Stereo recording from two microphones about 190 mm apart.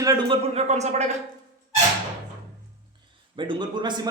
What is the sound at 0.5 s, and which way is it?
Speech, 35° right (ahead or behind).